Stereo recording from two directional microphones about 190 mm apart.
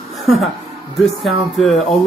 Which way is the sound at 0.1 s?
Centre (ahead or behind).